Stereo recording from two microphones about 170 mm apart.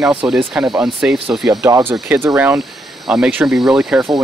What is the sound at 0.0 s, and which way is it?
Speech, 5° right (ahead or behind).